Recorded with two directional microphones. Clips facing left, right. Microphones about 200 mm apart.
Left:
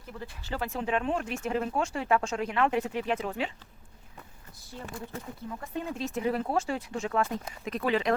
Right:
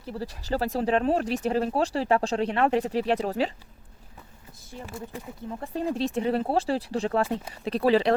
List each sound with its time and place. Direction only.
0.0 s speech: 35° right (ahead or behind)
5.5 s speech: 35° right (ahead or behind)